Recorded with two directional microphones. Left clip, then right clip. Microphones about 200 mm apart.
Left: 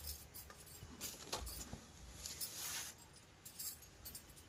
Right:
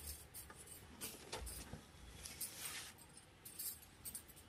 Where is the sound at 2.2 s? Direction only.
5° left (ahead or behind).